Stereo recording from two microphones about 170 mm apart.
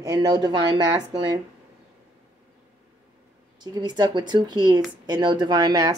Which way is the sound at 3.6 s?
25° right (ahead or behind).